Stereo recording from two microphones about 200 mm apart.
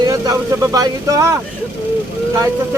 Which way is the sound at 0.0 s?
20° right (ahead or behind).